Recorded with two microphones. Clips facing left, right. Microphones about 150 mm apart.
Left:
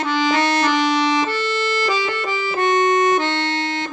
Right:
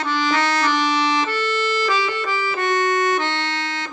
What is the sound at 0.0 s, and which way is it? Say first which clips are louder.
Music: left 3 dB; 20° left (ahead or behind).